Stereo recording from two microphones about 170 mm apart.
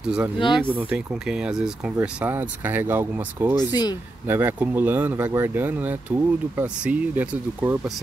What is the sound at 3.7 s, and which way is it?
Speech, 25° left (ahead or behind).